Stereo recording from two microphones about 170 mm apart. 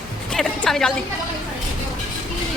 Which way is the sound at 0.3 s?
Centre (ahead or behind).